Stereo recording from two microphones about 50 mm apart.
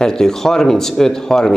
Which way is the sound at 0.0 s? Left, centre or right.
Centre.